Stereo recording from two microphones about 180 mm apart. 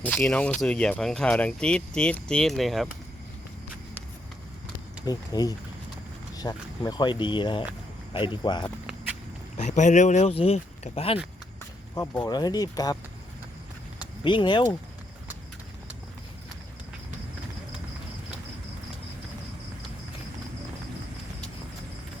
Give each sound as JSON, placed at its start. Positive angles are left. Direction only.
{"t": 0.0, "sound": "speech", "side_deg": 5}
{"t": 5.0, "sound": "speech", "side_deg": 20}
{"t": 9.6, "sound": "speech", "side_deg": 40}
{"t": 11.9, "sound": "speech", "side_deg": 20}
{"t": 14.3, "sound": "speech", "side_deg": 25}